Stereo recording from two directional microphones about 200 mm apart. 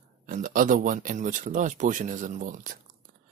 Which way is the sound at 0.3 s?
45° right (ahead or behind).